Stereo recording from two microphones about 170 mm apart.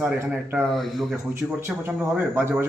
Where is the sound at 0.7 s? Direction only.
Centre (ahead or behind).